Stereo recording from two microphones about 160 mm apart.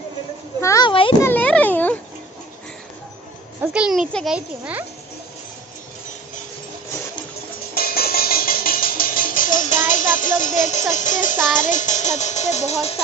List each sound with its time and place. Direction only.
0.6 s children playing: 20° left (ahead or behind)
0.9 s a sound: 30° left (ahead or behind)
1.2 s a sound: 10° left (ahead or behind)
3.6 s a child's voice: 5° right (ahead or behind)
7.8 s music: 70° left (ahead or behind); by 11.3 s 50° left (ahead or behind)
11.6 s a child's voice: 50° left (ahead or behind)